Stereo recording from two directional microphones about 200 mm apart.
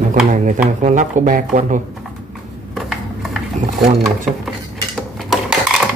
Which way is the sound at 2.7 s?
Centre (ahead or behind).